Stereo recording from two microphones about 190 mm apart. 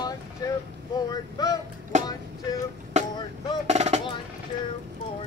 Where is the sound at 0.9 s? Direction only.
20° left (ahead or behind).